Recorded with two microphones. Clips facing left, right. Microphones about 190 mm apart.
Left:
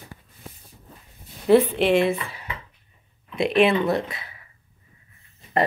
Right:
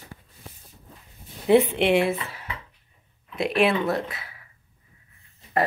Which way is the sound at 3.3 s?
5° right (ahead or behind).